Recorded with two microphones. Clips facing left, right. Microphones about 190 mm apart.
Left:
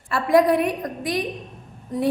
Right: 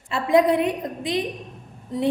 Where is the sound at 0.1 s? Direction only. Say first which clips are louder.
Left 1 dB; 20° right (ahead or behind).